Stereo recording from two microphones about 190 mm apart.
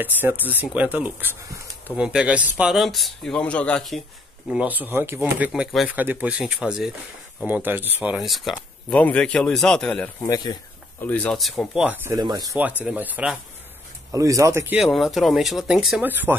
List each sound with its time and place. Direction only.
0.0 s speech: 10° right (ahead or behind)
4.5 s speech: 5° right (ahead or behind)
10.2 s speech: 20° left (ahead or behind)
11.0 s speech: 10° left (ahead or behind); by 12.5 s 20° right (ahead or behind)
12.8 s speech: 10° right (ahead or behind)
14.1 s speech: 15° right (ahead or behind)
14.8 s speech: centre (ahead or behind)